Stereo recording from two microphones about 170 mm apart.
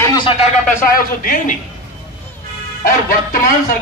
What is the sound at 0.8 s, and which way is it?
Speech, 55° left (ahead or behind).